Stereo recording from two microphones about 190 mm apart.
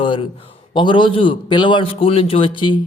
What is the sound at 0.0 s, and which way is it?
A man's voice, 25° left (ahead or behind).